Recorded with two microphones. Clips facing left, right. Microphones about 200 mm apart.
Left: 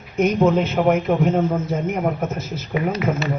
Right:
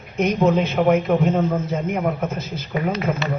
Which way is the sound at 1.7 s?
45° left (ahead or behind).